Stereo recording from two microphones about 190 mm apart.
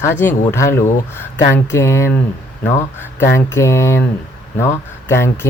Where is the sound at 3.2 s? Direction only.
15° left (ahead or behind).